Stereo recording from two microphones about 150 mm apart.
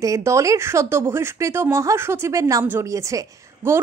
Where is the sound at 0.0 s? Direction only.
20° right (ahead or behind).